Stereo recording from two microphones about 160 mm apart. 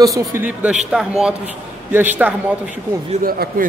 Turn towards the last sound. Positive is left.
turn(degrees=-65)  # may be behind; listen again after turning